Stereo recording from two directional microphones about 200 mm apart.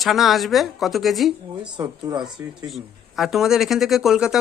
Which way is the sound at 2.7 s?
Centre (ahead or behind).